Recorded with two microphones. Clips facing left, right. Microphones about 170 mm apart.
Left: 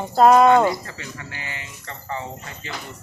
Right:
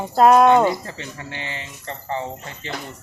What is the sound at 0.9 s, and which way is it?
Speech, 25° right (ahead or behind).